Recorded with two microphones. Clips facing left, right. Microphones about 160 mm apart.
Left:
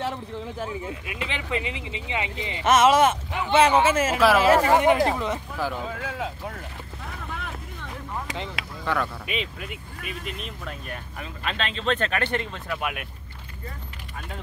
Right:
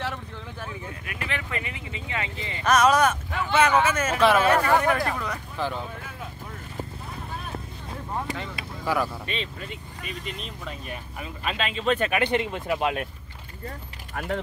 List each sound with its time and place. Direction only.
0.0 s speech: 25° left (ahead or behind)
5.9 s speech: 90° left
7.3 s vehicle: 90° left
8.8 s speech: 5° right (ahead or behind)
9.2 s speech: 10° left (ahead or behind); by 12.9 s 20° right (ahead or behind)